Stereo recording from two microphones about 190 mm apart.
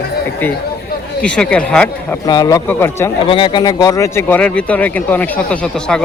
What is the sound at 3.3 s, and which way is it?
Speech, 25° left (ahead or behind).